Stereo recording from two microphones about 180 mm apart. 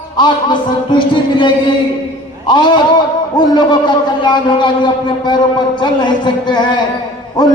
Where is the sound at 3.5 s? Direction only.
25° left (ahead or behind).